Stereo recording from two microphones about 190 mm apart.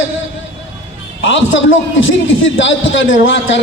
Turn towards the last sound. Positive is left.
turn(degrees=80)